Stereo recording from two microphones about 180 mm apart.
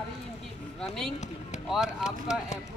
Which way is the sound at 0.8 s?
5° left (ahead or behind).